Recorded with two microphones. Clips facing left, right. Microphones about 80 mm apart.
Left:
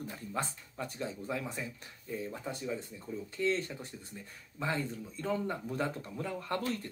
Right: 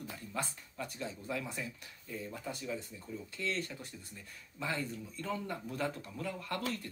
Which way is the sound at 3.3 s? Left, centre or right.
Left.